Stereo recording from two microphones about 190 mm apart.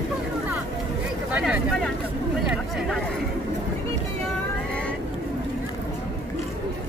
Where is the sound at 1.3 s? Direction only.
5° right (ahead or behind).